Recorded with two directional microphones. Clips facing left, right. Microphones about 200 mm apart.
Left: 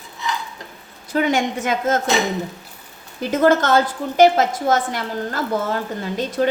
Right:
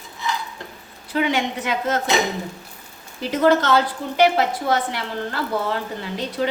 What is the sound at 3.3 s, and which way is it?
A woman's voice, 50° left (ahead or behind).